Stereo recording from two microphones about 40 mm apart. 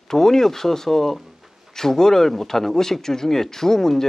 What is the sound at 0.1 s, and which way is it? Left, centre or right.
Speech, centre.